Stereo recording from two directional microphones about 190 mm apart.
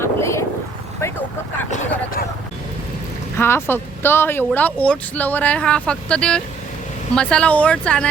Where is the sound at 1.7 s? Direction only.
40° left (ahead or behind).